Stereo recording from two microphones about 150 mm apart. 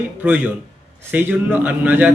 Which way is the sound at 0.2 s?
10° right (ahead or behind).